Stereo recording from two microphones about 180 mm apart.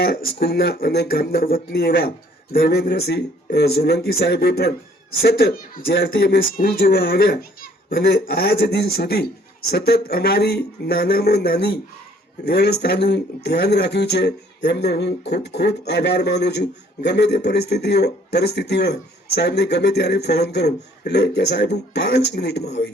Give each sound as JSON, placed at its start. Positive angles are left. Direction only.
{"t": 0.0, "sound": "speech", "side_deg": 60}